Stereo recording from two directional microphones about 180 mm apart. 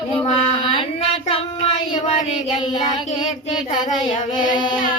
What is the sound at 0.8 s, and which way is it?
Child singing, 30° left (ahead or behind).